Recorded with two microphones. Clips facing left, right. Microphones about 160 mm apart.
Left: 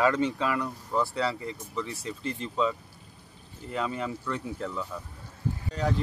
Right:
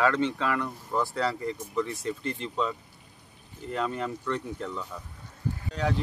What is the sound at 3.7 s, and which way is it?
Speech, centre (ahead or behind).